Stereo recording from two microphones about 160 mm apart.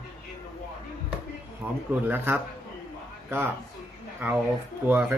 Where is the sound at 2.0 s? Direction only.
10° right (ahead or behind).